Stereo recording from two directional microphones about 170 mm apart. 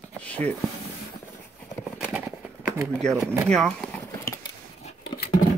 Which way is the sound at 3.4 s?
5° left (ahead or behind).